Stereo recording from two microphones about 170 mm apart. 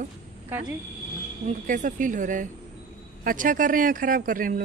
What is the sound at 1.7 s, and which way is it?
Speech, 50° right (ahead or behind).